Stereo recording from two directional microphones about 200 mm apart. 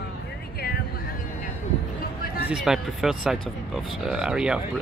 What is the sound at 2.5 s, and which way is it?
Speech, centre (ahead or behind).